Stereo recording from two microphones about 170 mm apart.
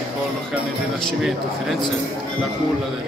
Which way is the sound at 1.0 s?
Centre (ahead or behind).